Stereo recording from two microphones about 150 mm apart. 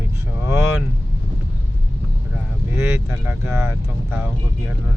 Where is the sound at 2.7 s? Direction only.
15° right (ahead or behind).